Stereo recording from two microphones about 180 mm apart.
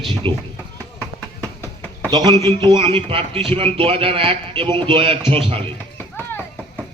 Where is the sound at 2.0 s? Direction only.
25° right (ahead or behind).